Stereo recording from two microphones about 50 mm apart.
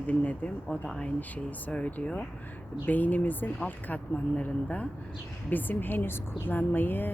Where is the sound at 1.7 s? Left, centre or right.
Left.